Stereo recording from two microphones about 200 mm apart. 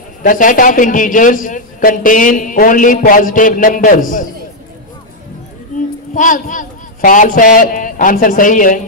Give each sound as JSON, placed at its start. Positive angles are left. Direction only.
{"t": 0.2, "sound": "a man's voice", "side_deg": 40}
{"t": 6.1, "sound": "a man's voice", "side_deg": 40}